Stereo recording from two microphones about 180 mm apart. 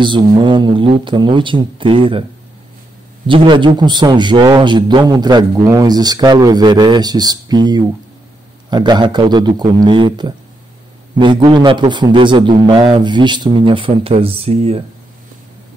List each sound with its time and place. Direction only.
0.0 s a man's voice: 25° right (ahead or behind)
3.3 s a man's voice: 30° right (ahead or behind)